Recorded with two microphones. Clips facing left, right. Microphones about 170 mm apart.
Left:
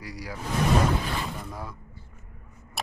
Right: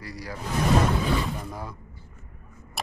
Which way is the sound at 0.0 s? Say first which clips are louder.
Right 1 dB; 10° left (ahead or behind).